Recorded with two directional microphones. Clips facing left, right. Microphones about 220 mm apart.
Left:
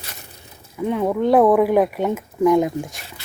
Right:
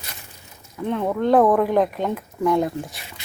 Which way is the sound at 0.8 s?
10° left (ahead or behind).